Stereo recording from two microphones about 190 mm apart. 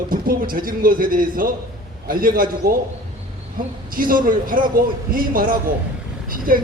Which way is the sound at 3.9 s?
50° right (ahead or behind).